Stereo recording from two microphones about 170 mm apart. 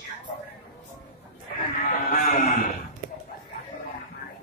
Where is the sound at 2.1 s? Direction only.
55° left (ahead or behind).